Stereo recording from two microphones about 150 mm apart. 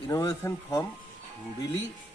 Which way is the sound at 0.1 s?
20° left (ahead or behind).